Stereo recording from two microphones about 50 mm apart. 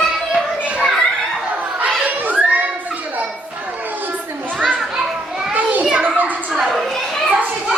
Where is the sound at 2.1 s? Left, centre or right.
Right.